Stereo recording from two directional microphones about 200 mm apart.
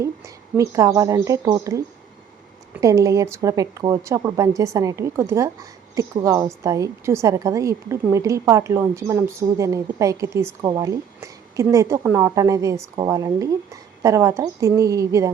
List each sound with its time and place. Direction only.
0.5 s a woman's voice: 15° right (ahead or behind)